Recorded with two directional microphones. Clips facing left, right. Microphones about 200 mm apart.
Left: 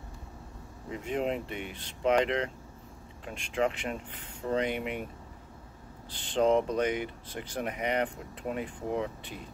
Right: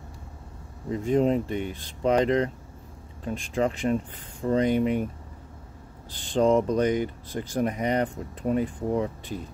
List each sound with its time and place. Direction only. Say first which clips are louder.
0.8 s speech: right 9 dB; 40° right (ahead or behind)
6.1 s speech: right 4 dB; 40° right (ahead or behind)